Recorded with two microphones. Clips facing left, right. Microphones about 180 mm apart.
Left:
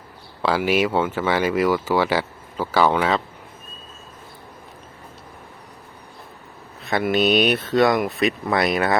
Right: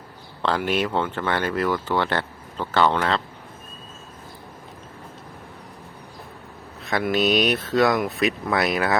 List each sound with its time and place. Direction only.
0.4 s speech: 5° left (ahead or behind)
6.8 s speech: centre (ahead or behind)